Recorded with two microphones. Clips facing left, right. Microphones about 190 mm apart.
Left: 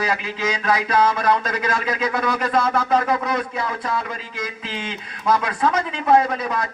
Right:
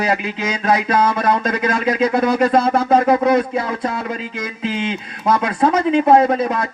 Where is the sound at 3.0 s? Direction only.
25° right (ahead or behind).